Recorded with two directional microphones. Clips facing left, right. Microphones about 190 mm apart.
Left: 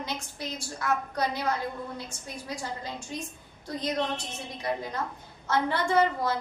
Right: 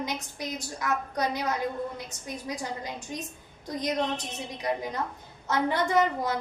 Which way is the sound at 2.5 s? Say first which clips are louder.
Even; 15° right (ahead or behind).